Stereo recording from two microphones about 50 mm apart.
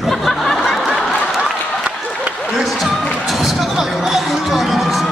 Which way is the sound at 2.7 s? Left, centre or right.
Centre.